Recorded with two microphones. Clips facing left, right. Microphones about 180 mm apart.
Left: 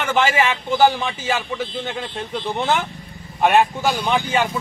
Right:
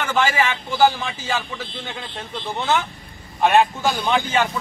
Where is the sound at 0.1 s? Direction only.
20° left (ahead or behind).